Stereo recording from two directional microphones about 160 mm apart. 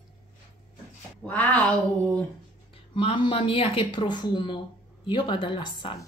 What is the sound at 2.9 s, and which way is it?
Speech, 35° left (ahead or behind).